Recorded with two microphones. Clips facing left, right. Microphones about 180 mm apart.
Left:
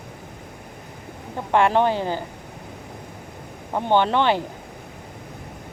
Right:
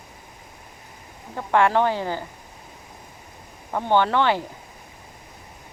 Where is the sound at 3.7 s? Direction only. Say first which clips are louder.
Left 1 dB; 20° left (ahead or behind).